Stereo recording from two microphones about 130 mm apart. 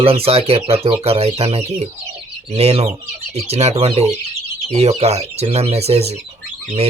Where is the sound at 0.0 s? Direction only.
50° right (ahead or behind).